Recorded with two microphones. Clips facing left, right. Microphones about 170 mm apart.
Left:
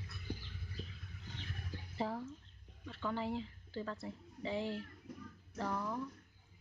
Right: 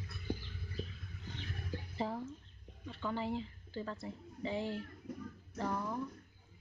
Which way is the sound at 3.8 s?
Centre (ahead or behind).